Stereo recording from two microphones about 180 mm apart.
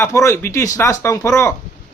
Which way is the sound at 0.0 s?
15° left (ahead or behind).